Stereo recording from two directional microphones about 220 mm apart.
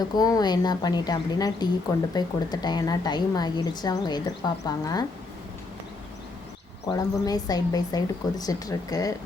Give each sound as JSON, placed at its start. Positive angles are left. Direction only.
{"t": 0.0, "sound": "a woman's voice", "side_deg": 15}
{"t": 6.9, "sound": "speech", "side_deg": 15}